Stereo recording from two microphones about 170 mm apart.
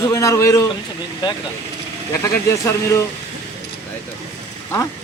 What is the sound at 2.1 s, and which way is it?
Speech, 15° left (ahead or behind).